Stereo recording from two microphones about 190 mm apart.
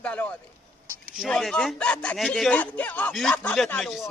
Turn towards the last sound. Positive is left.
turn(degrees=5)  # may be behind; listen again after turning